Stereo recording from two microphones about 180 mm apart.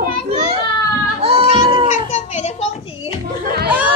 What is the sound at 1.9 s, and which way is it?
Speech, 40° left (ahead or behind).